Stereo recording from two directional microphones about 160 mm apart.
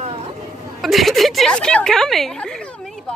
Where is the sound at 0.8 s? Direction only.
Centre (ahead or behind).